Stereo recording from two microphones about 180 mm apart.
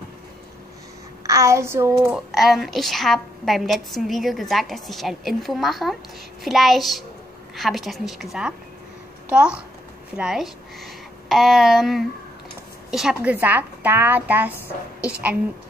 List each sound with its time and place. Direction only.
1.2 s a woman's voice: 15° right (ahead or behind)
2.0 s a woman's voice: centre (ahead or behind)